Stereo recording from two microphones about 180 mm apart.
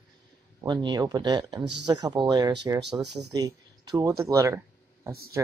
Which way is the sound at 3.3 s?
20° right (ahead or behind).